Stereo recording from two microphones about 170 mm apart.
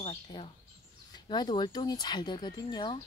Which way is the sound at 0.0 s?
35° left (ahead or behind).